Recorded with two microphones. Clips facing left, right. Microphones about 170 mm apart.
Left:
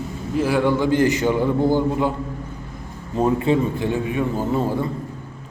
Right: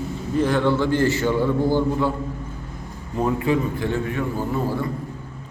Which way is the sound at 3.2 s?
20° left (ahead or behind).